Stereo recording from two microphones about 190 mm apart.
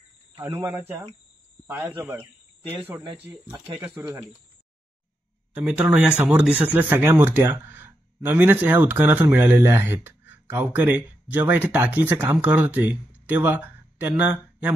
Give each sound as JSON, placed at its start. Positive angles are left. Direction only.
{"t": 0.4, "sound": "speech", "side_deg": -15}
{"t": 4.0, "sound": "speech", "side_deg": -15}
{"t": 5.5, "sound": "speech", "side_deg": -5}